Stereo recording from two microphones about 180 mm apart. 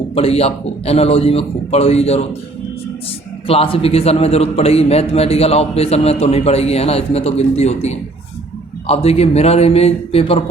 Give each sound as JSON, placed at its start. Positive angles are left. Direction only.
{"t": 0.1, "sound": "a man's voice", "side_deg": 35}
{"t": 3.4, "sound": "a man's voice", "side_deg": 30}